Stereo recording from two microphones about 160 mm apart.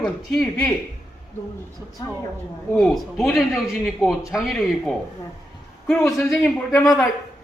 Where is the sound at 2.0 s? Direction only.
25° left (ahead or behind).